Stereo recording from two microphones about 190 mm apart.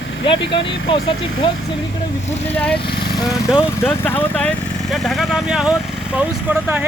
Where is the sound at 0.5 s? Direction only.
25° left (ahead or behind).